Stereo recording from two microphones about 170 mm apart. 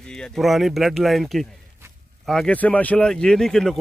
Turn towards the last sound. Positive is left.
turn(degrees=5)  # may be behind; listen again after turning